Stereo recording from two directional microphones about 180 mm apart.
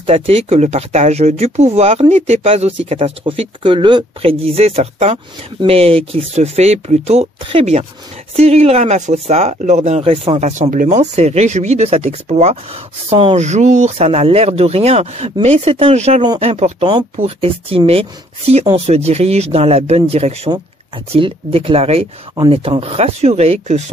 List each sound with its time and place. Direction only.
0.0 s speech: 35° right (ahead or behind)